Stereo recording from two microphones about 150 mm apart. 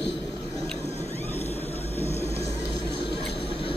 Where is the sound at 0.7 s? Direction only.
45° left (ahead or behind).